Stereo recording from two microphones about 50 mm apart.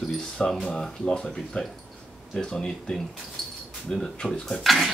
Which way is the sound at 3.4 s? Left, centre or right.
Centre.